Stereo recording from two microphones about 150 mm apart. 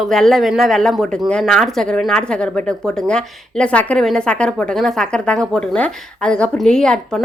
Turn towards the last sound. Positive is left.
turn(degrees=5)  # may be behind; listen again after turning